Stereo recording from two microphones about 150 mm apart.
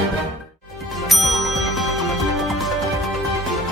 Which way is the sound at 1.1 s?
Centre (ahead or behind).